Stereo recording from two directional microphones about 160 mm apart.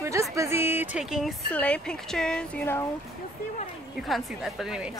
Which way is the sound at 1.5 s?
10° left (ahead or behind).